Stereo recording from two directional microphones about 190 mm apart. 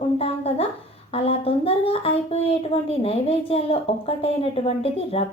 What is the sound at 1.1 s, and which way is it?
Speech, 30° left (ahead or behind).